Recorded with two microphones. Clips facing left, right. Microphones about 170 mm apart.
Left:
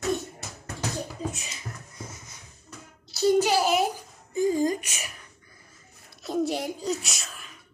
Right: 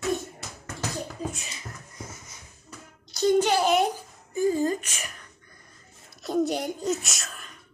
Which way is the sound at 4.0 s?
20° left (ahead or behind).